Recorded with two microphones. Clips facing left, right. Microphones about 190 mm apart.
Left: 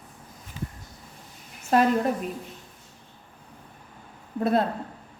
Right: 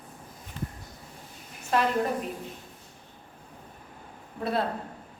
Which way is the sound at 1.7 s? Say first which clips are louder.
Left 5 dB; 45° left (ahead or behind).